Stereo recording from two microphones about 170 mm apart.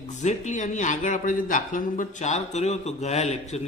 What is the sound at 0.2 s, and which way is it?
A man's voice, 45° left (ahead or behind).